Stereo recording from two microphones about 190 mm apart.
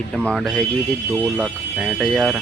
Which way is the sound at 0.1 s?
5° left (ahead or behind).